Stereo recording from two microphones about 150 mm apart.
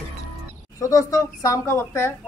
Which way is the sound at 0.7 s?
20° left (ahead or behind).